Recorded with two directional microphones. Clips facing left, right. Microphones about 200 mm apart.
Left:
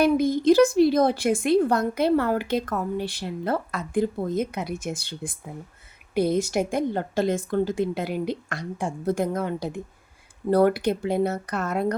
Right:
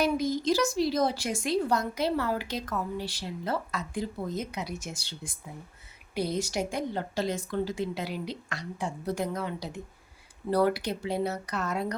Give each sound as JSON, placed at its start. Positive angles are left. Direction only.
{"t": 0.0, "sound": "a woman's voice", "side_deg": 55}